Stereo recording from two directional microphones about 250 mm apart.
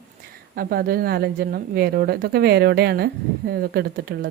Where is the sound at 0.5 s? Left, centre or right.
Right.